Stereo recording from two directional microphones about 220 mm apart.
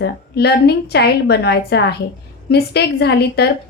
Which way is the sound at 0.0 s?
50° left (ahead or behind).